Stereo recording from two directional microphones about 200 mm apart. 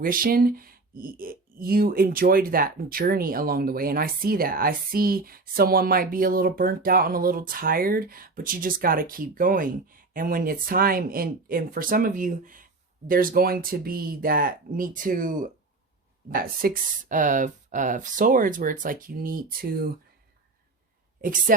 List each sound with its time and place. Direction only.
0.0 s speech: 45° right (ahead or behind)
21.2 s speech: 45° right (ahead or behind)